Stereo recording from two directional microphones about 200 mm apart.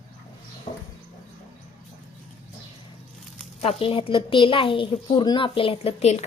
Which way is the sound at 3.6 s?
25° left (ahead or behind).